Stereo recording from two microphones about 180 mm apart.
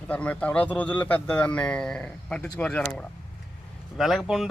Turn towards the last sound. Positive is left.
turn(degrees=0)  # may be behind; listen again after turning